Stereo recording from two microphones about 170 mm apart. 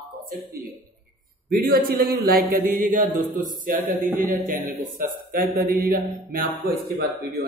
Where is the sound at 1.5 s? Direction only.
60° right (ahead or behind).